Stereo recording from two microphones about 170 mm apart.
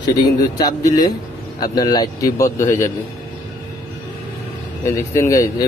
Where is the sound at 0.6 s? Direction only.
25° left (ahead or behind).